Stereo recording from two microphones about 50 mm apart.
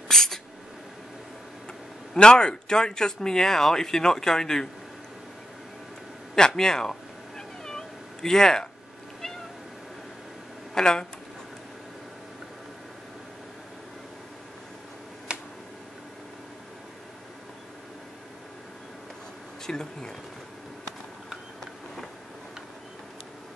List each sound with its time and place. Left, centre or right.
0.1 s a sound: centre
2.1 s speech: centre
6.3 s cat: centre
10.7 s speech: centre
15.3 s tick-tock: centre
19.6 s speech: centre